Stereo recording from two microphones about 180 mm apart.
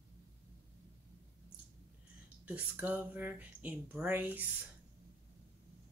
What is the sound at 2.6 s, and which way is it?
Speech, 10° right (ahead or behind).